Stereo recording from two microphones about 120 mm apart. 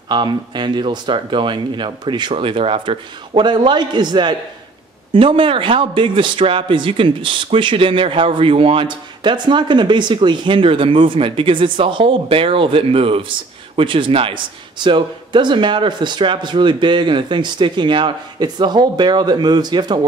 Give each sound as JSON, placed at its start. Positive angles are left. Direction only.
{"t": 0.1, "sound": "speech", "side_deg": -40}
{"t": 2.3, "sound": "a man's voice", "side_deg": -50}